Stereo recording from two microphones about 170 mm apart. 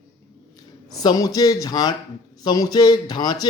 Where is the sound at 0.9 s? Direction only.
20° left (ahead or behind).